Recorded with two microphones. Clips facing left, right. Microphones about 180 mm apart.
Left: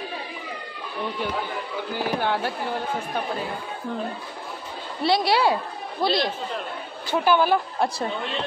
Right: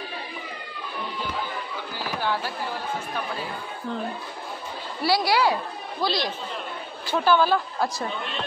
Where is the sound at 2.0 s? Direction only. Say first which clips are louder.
Left 3 dB; 55° left (ahead or behind).